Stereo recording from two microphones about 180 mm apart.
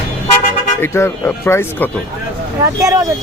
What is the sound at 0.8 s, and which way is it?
Speech, 15° left (ahead or behind).